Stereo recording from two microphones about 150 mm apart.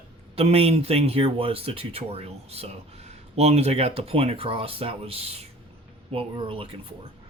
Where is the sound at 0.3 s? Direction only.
40° right (ahead or behind).